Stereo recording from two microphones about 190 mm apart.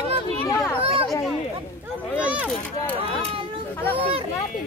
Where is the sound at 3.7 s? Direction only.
10° left (ahead or behind).